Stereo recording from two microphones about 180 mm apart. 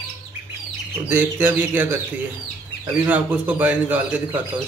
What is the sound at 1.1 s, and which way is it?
Speech, 10° right (ahead or behind).